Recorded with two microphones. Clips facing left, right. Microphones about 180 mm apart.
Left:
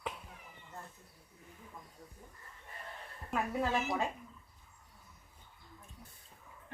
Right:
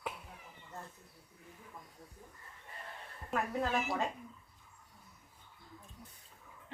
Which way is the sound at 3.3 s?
5° left (ahead or behind).